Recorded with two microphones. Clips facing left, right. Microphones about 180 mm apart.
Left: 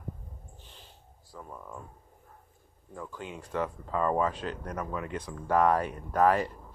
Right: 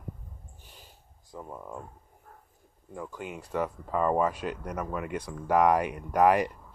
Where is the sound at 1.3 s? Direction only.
20° right (ahead or behind).